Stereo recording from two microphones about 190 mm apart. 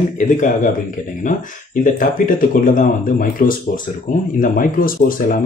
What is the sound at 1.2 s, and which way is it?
Speech, 45° left (ahead or behind).